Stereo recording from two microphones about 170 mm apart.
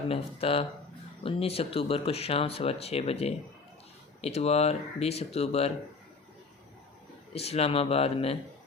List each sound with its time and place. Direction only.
0.1 s speech: 35° left (ahead or behind)
7.3 s speech: 35° left (ahead or behind)